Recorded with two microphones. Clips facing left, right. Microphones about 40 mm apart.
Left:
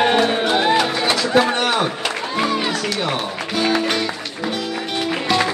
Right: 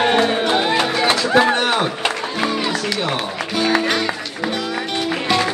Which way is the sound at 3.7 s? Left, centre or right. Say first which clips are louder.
Right 2 dB; centre.